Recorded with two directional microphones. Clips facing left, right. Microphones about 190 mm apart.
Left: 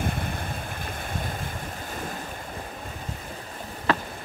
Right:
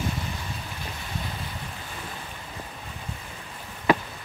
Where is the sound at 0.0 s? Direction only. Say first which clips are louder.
Left 2 dB; 55° left (ahead or behind).